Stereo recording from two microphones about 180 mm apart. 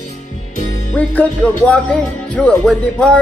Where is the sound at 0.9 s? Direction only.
10° left (ahead or behind).